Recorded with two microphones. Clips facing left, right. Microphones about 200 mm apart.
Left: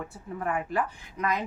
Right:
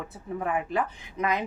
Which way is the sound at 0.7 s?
20° right (ahead or behind).